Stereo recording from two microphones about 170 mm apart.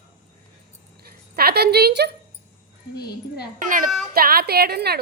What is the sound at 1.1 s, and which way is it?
A woman's voice, 65° right (ahead or behind).